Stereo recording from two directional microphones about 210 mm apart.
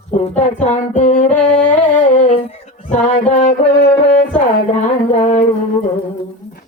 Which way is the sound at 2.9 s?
35° left (ahead or behind).